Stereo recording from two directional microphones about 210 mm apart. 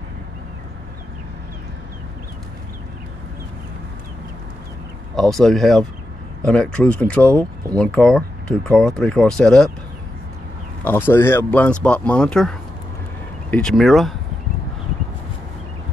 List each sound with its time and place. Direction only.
5.1 s speech: centre (ahead or behind)
10.8 s speech: 10° left (ahead or behind)